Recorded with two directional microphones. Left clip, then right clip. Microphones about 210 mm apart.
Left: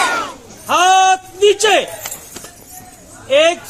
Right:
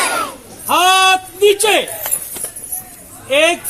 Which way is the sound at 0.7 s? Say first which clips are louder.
Even; 40° right (ahead or behind).